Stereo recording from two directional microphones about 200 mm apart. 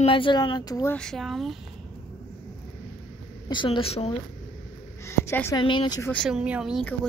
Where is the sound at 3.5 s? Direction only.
25° left (ahead or behind).